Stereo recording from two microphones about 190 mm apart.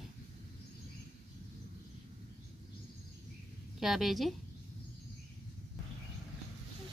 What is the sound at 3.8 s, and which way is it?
Speech, centre (ahead or behind).